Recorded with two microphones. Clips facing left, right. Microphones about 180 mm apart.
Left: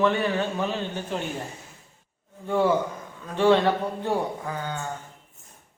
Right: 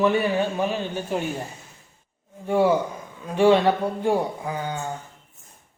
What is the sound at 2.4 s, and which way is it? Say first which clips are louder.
A man's voice: right 2 dB; 15° right (ahead or behind).